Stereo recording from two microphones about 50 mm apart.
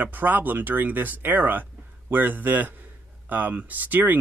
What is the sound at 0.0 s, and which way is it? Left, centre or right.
A man's voice, right.